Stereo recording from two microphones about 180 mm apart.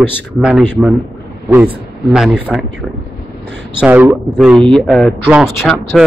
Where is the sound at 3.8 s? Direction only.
10° right (ahead or behind).